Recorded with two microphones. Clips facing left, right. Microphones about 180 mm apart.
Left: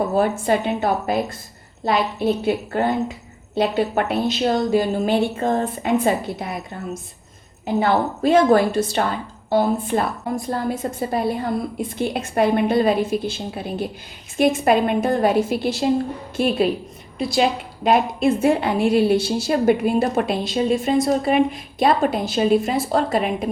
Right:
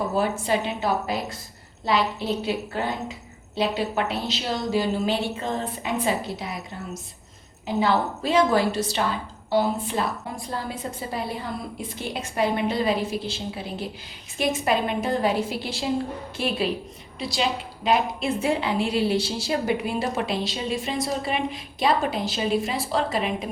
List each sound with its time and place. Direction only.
0.2 s a woman's voice: 55° left (ahead or behind)
17.2 s a woman's voice: 50° left (ahead or behind)